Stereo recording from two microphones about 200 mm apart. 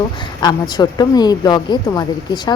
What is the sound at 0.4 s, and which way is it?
Speech, 20° left (ahead or behind).